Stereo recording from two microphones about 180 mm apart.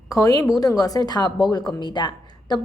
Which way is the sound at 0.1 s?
15° left (ahead or behind).